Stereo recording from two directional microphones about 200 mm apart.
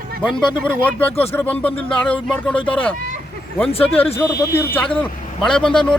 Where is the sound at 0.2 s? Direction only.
Centre (ahead or behind).